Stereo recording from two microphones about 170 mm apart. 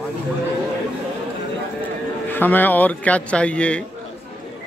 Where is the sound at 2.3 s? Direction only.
10° left (ahead or behind).